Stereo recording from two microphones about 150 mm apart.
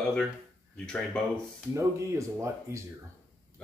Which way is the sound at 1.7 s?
20° right (ahead or behind).